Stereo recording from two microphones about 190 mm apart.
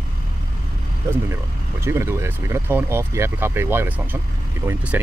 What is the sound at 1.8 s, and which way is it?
Speech, 15° right (ahead or behind).